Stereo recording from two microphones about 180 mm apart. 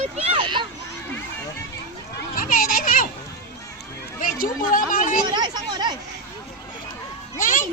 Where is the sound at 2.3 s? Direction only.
50° left (ahead or behind).